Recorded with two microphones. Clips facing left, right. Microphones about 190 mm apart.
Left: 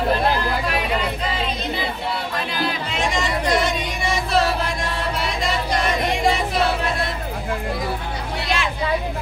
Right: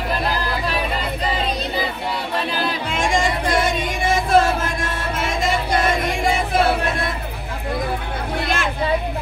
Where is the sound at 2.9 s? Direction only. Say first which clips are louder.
Right 3 dB; 50° right (ahead or behind).